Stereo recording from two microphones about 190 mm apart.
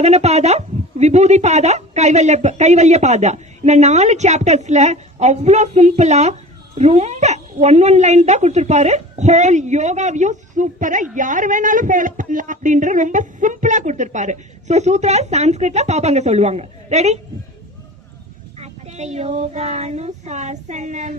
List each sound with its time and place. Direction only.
0.0 s a woman's voice: 35° right (ahead or behind)
18.6 s a woman's voice: 35° right (ahead or behind)